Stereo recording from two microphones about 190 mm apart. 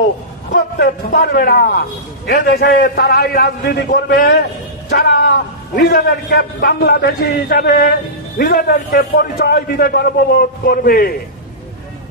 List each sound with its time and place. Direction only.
0.5 s a man's voice: 55° left (ahead or behind)